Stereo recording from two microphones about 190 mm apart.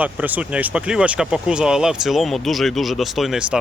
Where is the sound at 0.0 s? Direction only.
10° right (ahead or behind).